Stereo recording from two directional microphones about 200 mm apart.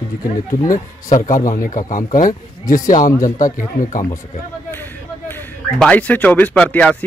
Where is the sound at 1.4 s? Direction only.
40° left (ahead or behind).